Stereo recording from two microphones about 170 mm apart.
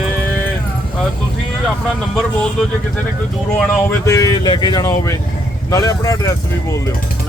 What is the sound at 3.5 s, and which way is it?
Speech, 15° left (ahead or behind).